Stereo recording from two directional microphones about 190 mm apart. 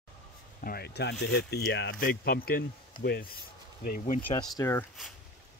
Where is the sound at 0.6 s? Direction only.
55° left (ahead or behind).